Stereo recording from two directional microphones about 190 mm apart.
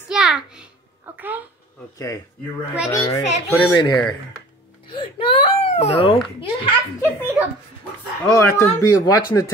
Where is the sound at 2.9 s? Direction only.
20° left (ahead or behind).